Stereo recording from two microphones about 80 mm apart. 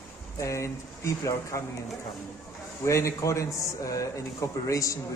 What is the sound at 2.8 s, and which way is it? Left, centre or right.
A man's voice, left.